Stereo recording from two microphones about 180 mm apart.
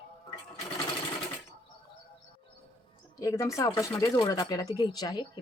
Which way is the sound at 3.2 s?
15° left (ahead or behind).